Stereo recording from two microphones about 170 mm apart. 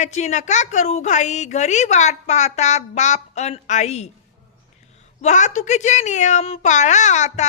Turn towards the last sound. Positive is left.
turn(degrees=45)  # may be behind; listen again after turning